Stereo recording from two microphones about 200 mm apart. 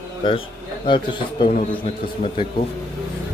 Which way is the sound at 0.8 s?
25° left (ahead or behind).